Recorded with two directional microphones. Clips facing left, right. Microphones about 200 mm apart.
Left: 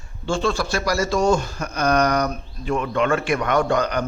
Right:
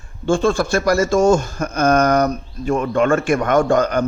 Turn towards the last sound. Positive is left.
turn(degrees=-45)  # may be behind; listen again after turning